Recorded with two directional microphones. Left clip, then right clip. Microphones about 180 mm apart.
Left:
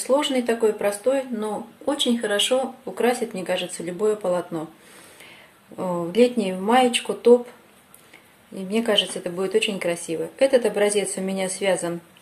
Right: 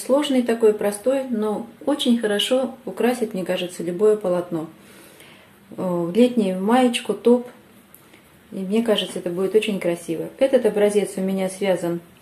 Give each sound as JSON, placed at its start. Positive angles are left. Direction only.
{"t": 0.0, "sound": "speech", "side_deg": 15}
{"t": 5.8, "sound": "speech", "side_deg": 15}
{"t": 8.5, "sound": "a woman's voice", "side_deg": 15}